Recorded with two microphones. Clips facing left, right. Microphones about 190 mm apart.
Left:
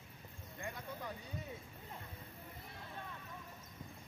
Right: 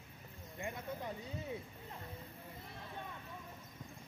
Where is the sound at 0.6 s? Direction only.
20° right (ahead or behind).